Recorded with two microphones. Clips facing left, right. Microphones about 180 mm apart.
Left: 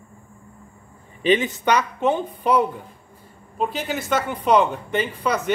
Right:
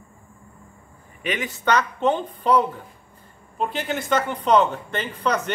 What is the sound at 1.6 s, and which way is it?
Speech, 10° left (ahead or behind).